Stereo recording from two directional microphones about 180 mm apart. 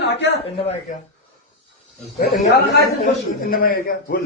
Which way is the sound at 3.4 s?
55° left (ahead or behind).